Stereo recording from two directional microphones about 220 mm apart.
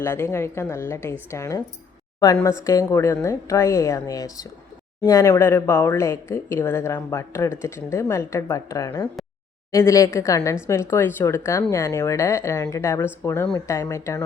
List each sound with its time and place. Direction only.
0.0 s a woman's voice: 10° left (ahead or behind)